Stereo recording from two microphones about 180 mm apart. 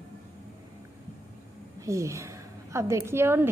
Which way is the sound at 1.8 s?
15° right (ahead or behind).